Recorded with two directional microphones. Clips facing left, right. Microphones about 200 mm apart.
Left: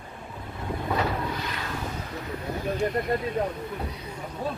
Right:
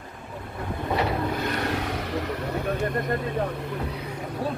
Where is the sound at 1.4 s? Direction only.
70° right (ahead or behind).